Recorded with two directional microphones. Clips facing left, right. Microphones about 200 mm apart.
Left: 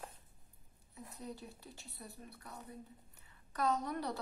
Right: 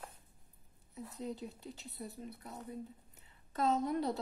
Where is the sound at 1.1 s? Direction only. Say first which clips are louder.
Right 5 dB; 20° right (ahead or behind).